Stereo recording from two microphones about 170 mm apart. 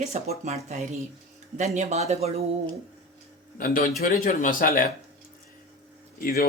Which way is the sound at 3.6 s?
55° left (ahead or behind).